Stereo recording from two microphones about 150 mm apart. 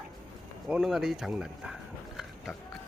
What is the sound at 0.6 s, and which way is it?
Speech, 5° right (ahead or behind).